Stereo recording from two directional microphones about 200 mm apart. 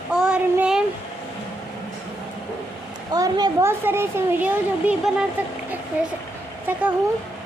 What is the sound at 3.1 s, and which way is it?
A child's voice, 20° right (ahead or behind).